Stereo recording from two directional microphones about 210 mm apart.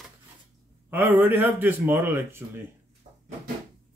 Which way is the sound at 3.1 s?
30° right (ahead or behind).